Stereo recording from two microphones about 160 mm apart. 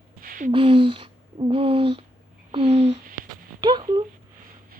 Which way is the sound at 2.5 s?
40° right (ahead or behind).